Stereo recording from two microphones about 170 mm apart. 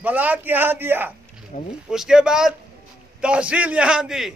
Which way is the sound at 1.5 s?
50° left (ahead or behind).